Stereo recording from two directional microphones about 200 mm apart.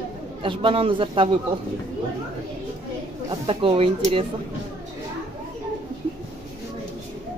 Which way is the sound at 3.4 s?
25° right (ahead or behind).